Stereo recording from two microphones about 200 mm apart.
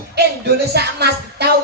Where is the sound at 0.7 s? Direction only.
55° right (ahead or behind).